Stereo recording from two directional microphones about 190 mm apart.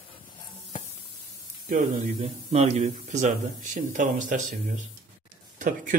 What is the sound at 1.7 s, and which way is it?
Speech, 35° right (ahead or behind).